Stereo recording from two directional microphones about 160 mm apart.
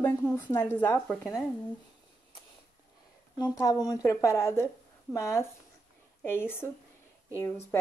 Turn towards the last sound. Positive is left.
turn(degrees=15)  # may be behind; listen again after turning